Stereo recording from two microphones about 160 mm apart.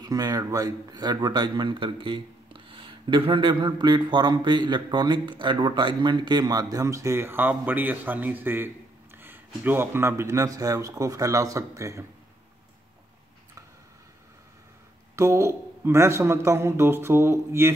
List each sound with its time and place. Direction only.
0.0 s speech: 25° right (ahead or behind)
15.1 s a man's voice: 15° right (ahead or behind)